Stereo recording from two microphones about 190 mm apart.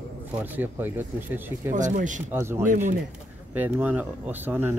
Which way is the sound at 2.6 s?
40° right (ahead or behind).